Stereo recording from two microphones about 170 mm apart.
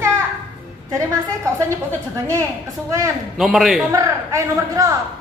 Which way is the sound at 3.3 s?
Centre (ahead or behind).